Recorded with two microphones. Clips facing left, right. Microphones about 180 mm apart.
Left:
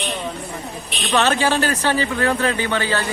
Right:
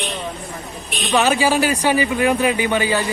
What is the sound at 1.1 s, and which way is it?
Speech, 10° right (ahead or behind).